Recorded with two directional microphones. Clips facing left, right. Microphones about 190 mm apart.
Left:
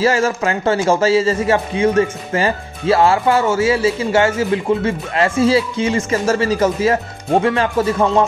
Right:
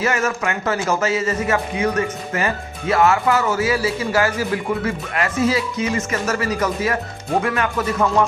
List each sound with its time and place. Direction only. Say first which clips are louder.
0.0 s speech: left 5 dB; 30° left (ahead or behind)